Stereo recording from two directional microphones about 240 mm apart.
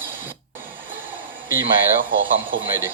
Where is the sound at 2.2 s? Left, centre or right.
Right.